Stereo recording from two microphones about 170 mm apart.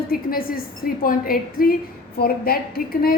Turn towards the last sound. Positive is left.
turn(degrees=60)  # may be behind; listen again after turning